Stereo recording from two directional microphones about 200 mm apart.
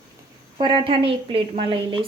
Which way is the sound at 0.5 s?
25° right (ahead or behind).